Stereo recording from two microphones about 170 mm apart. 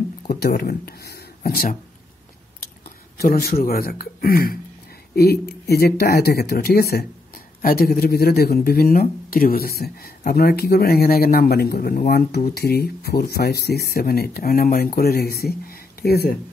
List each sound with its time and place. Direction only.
0.3 s speech: 65° left (ahead or behind)
1.1 s a sound: 65° left (ahead or behind)
3.2 s speech: 60° left (ahead or behind)